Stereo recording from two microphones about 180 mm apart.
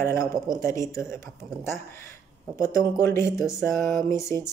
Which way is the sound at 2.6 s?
15° left (ahead or behind).